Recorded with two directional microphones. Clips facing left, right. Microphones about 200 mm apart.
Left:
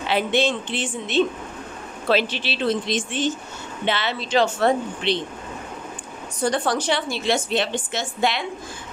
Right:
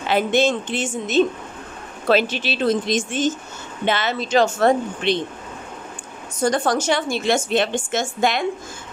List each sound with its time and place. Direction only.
0.0 s a woman's voice: 45° right (ahead or behind)
6.4 s a woman's voice: 45° right (ahead or behind)